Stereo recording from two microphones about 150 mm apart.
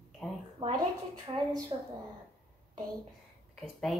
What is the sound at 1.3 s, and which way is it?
Speech, 30° right (ahead or behind).